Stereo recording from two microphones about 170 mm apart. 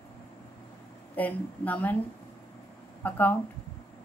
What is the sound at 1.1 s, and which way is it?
Speech, 10° left (ahead or behind).